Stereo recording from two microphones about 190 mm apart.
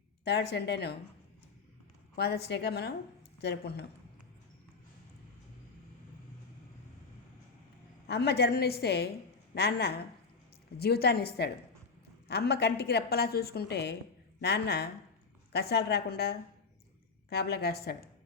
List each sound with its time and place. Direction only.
0.3 s a woman's voice: 60° left (ahead or behind)
2.1 s a woman's voice: 60° left (ahead or behind)
8.0 s a woman's voice: 60° left (ahead or behind)